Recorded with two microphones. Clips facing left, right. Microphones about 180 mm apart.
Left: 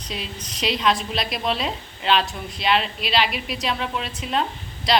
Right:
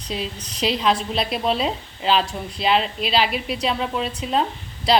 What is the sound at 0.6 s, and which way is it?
A woman's voice, 30° right (ahead or behind).